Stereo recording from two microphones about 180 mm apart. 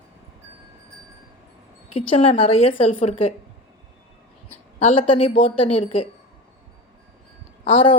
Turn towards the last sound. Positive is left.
turn(degrees=30)  # may be behind; listen again after turning